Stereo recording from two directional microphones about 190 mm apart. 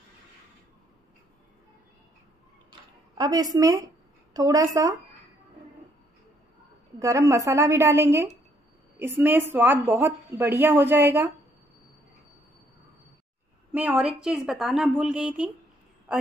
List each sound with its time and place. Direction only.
3.2 s a woman's voice: 20° right (ahead or behind)
7.0 s a woman's voice: 15° right (ahead or behind)
13.7 s a woman's voice: 5° right (ahead or behind)